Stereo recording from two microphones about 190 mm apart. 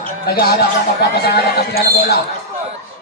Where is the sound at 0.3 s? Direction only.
55° left (ahead or behind).